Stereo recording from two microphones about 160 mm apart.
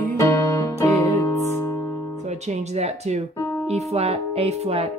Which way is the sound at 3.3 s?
15° left (ahead or behind).